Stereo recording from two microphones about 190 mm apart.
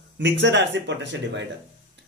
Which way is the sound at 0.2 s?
70° right (ahead or behind).